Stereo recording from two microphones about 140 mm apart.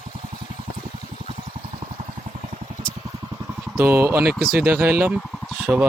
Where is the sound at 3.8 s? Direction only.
15° right (ahead or behind).